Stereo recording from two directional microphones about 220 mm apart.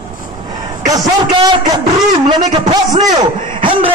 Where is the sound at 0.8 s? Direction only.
15° right (ahead or behind).